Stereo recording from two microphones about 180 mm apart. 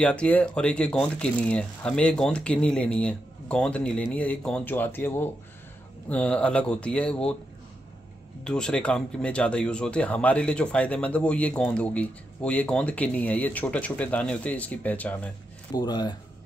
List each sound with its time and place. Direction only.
0.0 s speech: 5° left (ahead or behind)
8.5 s speech: 5° left (ahead or behind)
15.7 s speech: 20° left (ahead or behind)